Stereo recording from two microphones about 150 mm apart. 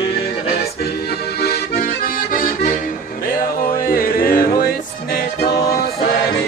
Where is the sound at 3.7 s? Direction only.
70° left (ahead or behind); by 5.4 s 90° left.